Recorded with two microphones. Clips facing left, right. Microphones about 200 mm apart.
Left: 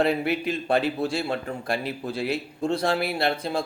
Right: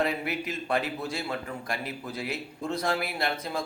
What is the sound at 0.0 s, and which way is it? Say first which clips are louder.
A man's voice: left 6 dB; 30° left (ahead or behind).